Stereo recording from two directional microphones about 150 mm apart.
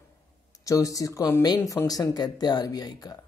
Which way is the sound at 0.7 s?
25° left (ahead or behind).